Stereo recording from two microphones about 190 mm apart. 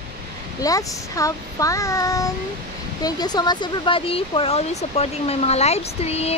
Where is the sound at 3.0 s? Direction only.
20° left (ahead or behind).